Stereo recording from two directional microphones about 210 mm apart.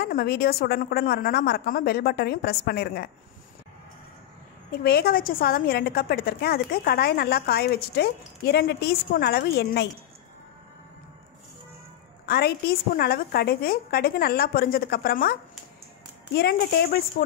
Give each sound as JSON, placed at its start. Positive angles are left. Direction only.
{"t": 0.0, "sound": "a woman's voice", "side_deg": 45}
{"t": 4.8, "sound": "a woman's voice", "side_deg": 45}
{"t": 12.3, "sound": "a woman's voice", "side_deg": 50}
{"t": 16.3, "sound": "a woman's voice", "side_deg": 50}